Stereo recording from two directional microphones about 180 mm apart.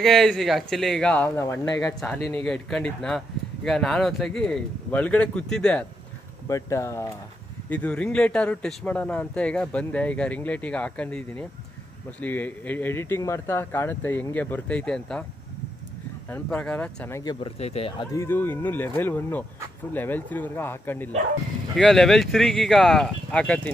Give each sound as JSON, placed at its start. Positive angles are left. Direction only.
{"t": 0.0, "sound": "a man's voice", "side_deg": 0}
{"t": 1.8, "sound": "a man's voice", "side_deg": 5}
{"t": 6.4, "sound": "speech", "side_deg": 15}
{"t": 16.3, "sound": "speech", "side_deg": 5}
{"t": 17.2, "sound": "speech", "side_deg": 25}
{"t": 18.1, "sound": "a man's voice", "side_deg": 15}